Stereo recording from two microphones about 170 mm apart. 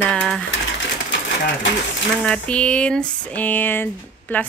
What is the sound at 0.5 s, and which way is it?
Sewing machine, 90° left.